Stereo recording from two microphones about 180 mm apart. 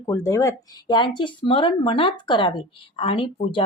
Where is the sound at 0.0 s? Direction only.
15° left (ahead or behind).